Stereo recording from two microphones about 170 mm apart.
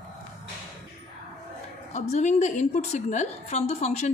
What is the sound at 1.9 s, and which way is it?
Speech, 45° left (ahead or behind).